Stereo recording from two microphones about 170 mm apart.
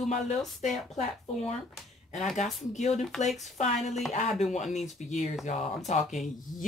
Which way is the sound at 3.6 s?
40° left (ahead or behind).